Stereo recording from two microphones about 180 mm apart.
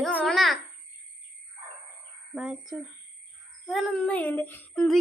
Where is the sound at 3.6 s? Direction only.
5° left (ahead or behind).